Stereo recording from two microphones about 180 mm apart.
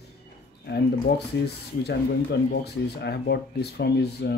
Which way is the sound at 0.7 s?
65° left (ahead or behind).